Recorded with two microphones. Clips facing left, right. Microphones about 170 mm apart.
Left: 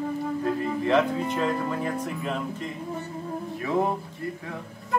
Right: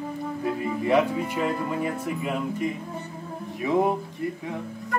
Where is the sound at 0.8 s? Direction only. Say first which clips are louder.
Right 1 dB; 10° right (ahead or behind).